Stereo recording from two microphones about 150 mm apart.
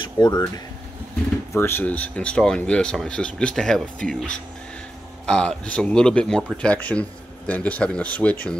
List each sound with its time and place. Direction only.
0.0 s speech: 30° left (ahead or behind)
1.6 s speech: 15° left (ahead or behind)